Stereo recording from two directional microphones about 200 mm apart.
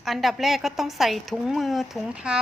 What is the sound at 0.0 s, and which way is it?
A woman's voice, centre (ahead or behind).